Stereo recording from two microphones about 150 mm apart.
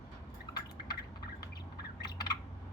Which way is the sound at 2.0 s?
25° left (ahead or behind).